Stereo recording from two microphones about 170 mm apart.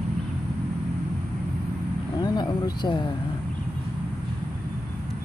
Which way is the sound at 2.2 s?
25° left (ahead or behind).